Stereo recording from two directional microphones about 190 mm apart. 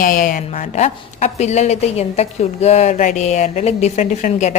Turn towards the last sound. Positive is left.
turn(degrees=40)  # may be behind; listen again after turning